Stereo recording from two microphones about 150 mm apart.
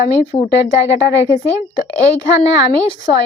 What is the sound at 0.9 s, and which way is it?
Speech, 20° right (ahead or behind).